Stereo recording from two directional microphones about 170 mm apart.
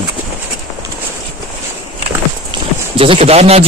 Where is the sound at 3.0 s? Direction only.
35° right (ahead or behind).